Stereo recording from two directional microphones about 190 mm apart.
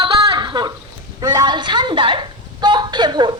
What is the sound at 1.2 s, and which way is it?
A woman's voice, 20° right (ahead or behind).